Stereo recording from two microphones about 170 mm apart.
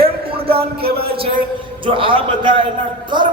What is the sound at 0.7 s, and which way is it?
Speech, 65° right (ahead or behind).